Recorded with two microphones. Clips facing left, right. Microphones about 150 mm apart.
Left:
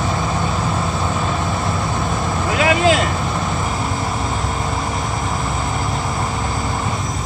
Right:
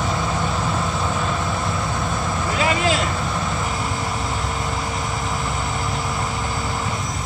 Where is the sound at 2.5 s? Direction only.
70° left (ahead or behind).